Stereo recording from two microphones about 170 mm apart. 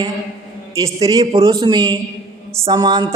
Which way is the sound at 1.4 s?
25° right (ahead or behind).